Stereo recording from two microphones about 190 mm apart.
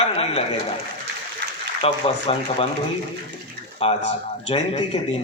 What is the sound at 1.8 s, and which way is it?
Speech, 30° left (ahead or behind).